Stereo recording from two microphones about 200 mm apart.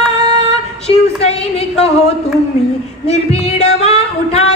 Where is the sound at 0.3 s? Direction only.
30° left (ahead or behind).